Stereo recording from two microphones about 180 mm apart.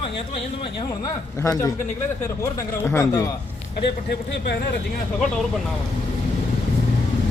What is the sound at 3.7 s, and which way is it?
Speech, 70° left (ahead or behind).